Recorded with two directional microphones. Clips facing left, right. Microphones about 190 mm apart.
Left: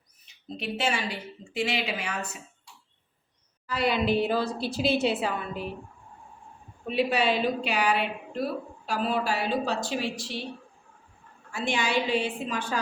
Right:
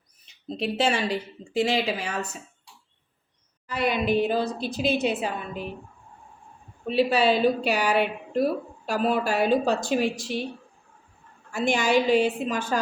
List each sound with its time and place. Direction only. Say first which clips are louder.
0.4 s a woman's voice: right 5 dB; 35° right (ahead or behind)
3.7 s a woman's voice: right 1 dB; 20° right (ahead or behind)
6.8 s a woman's voice: right 4 dB; 35° right (ahead or behind)
11.5 s speech: right 5 dB; 45° right (ahead or behind)